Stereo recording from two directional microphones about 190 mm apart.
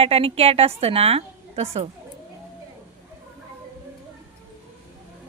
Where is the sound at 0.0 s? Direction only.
30° right (ahead or behind).